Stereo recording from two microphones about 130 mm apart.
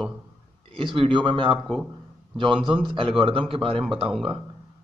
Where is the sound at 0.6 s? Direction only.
40° right (ahead or behind).